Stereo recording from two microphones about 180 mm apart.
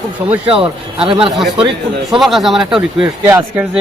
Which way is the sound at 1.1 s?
30° right (ahead or behind).